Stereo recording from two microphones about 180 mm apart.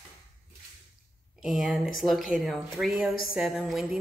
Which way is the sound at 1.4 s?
Centre (ahead or behind).